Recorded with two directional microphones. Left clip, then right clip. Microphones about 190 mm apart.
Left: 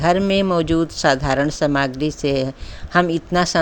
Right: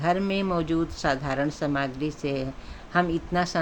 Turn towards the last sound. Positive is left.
turn(degrees=45)  # may be behind; listen again after turning